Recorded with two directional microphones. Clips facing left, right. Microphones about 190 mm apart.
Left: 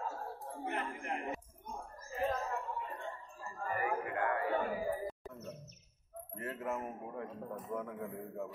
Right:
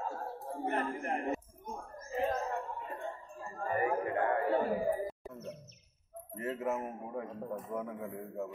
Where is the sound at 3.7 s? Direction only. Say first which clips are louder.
Right 5 dB; 25° right (ahead or behind).